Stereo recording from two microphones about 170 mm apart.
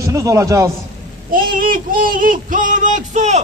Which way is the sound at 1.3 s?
55° right (ahead or behind).